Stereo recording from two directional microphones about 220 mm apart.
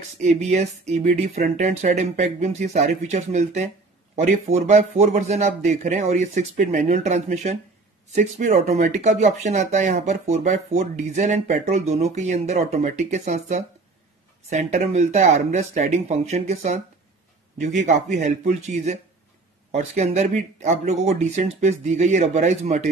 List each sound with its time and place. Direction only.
0.2 s speech: 30° right (ahead or behind)